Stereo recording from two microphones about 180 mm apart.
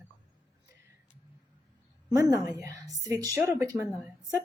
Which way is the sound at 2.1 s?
15° right (ahead or behind).